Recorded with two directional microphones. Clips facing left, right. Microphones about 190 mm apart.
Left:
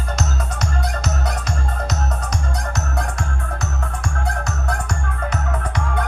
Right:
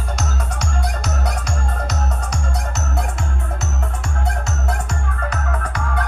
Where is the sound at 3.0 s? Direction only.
20° right (ahead or behind).